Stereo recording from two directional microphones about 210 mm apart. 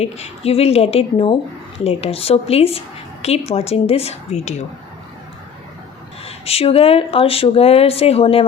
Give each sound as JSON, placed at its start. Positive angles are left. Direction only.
{"t": 0.0, "sound": "speech", "side_deg": 30}
{"t": 6.2, "sound": "speech", "side_deg": 30}